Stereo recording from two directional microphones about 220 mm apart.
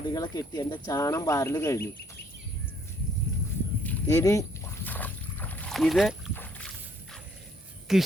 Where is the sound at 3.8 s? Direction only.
15° left (ahead or behind).